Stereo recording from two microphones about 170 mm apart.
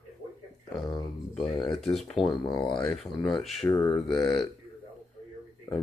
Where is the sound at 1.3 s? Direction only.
Centre (ahead or behind).